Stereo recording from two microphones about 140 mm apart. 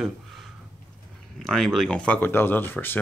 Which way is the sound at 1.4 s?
5° left (ahead or behind).